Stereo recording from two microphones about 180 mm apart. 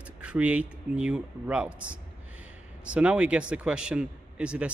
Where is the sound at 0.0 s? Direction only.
5° right (ahead or behind).